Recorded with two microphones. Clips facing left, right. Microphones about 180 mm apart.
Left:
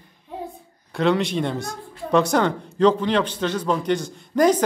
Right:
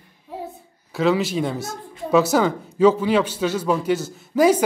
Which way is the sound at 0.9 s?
5° right (ahead or behind).